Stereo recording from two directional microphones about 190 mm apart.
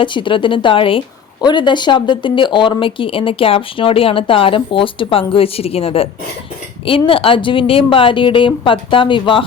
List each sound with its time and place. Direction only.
0.0 s a woman's voice: 25° left (ahead or behind)